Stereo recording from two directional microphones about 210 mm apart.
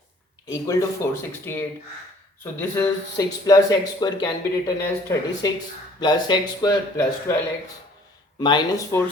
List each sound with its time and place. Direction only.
0.5 s speech: 15° left (ahead or behind)
8.4 s speech: 20° left (ahead or behind)